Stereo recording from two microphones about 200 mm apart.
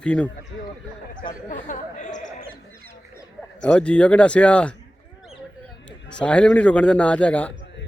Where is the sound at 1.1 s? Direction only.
40° left (ahead or behind).